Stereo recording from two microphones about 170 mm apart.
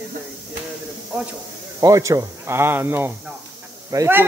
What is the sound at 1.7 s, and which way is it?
A man's voice, 20° right (ahead or behind).